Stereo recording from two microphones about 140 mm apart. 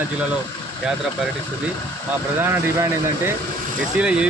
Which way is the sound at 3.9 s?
5° right (ahead or behind).